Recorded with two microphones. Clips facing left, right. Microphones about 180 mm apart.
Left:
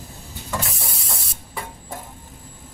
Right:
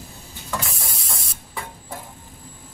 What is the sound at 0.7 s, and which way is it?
Spray, 25° left (ahead or behind).